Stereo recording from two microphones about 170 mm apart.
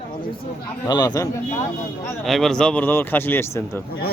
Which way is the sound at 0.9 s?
25° left (ahead or behind).